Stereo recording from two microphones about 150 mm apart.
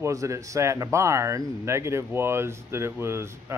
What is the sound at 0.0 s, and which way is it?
Speech, 20° right (ahead or behind).